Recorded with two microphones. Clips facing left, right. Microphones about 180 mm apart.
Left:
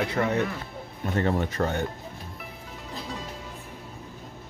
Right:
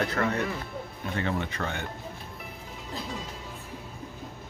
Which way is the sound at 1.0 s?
40° left (ahead or behind).